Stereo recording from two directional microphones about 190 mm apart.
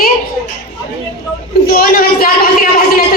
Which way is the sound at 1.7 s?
50° left (ahead or behind).